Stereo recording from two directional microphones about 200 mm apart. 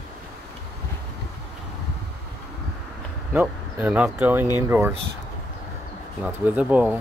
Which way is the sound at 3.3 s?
10° right (ahead or behind).